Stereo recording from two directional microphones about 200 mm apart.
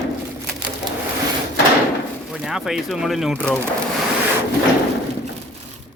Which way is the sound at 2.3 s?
Centre (ahead or behind).